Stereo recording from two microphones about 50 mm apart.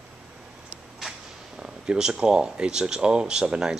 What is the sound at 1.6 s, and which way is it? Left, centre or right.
Speech, centre.